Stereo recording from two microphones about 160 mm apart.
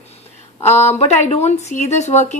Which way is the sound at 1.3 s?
40° left (ahead or behind).